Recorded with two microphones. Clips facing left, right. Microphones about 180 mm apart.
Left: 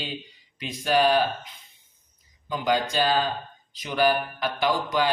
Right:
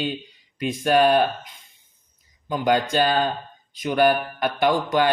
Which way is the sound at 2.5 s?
50° right (ahead or behind).